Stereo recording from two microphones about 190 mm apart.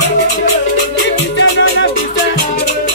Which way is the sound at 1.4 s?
70° left (ahead or behind).